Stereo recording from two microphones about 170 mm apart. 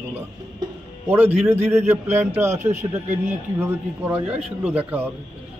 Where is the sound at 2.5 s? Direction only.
45° right (ahead or behind).